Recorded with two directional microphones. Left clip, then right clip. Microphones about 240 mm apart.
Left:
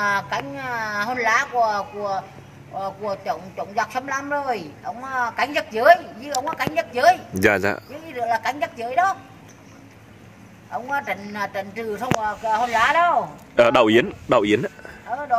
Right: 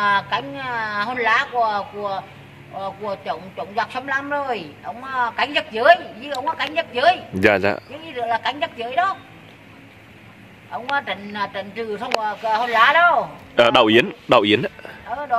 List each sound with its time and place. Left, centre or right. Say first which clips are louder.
0.0 s a man's voice: right 3 dB; centre
10.7 s a man's voice: right 2 dB; centre
12.4 s speech: right 3 dB; centre
13.6 s speech: right 1 dB; centre